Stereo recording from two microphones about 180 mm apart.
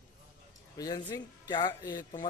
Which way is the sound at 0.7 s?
20° left (ahead or behind).